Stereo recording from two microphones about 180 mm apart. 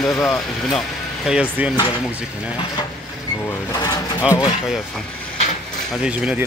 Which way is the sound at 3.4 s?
20° left (ahead or behind).